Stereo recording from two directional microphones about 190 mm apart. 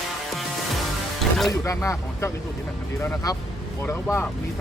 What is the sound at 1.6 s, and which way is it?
Speech, 15° left (ahead or behind).